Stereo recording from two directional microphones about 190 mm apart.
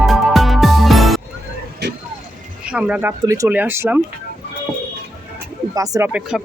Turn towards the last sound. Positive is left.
turn(degrees=-5)  # may be behind; listen again after turning